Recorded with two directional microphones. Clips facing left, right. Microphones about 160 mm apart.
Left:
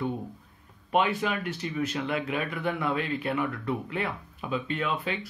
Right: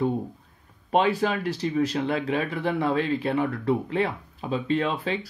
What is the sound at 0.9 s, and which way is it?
Speech, 30° right (ahead or behind).